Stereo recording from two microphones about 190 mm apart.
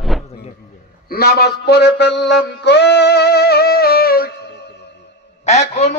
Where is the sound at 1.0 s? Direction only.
55° left (ahead or behind).